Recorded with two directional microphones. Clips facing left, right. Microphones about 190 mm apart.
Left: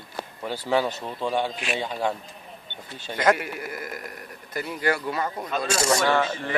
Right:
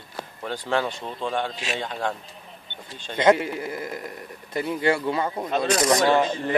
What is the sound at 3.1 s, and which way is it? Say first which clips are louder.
Speech: right 4 dB; 25° right (ahead or behind).